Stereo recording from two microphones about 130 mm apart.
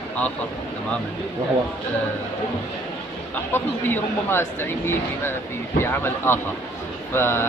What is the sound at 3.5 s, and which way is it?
Speech, 15° left (ahead or behind).